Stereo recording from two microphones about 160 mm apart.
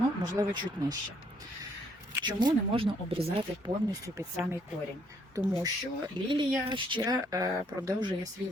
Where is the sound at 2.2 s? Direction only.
30° right (ahead or behind).